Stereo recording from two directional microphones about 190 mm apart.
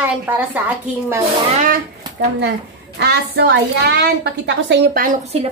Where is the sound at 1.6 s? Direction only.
45° right (ahead or behind).